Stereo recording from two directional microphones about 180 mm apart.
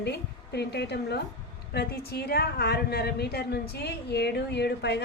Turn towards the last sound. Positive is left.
turn(degrees=70)  # may be behind; listen again after turning